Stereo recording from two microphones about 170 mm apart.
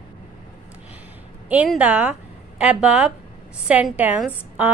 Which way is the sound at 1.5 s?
10° right (ahead or behind).